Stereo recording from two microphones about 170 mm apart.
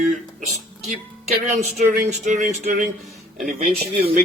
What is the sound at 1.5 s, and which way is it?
Speech, 45° right (ahead or behind).